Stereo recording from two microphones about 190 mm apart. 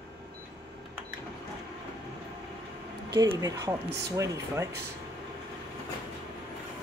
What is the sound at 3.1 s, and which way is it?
Speech, 20° right (ahead or behind).